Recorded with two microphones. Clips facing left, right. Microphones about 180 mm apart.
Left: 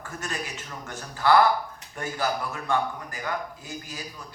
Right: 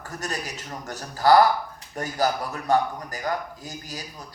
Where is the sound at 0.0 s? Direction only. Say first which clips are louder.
Right 2 dB; 40° right (ahead or behind).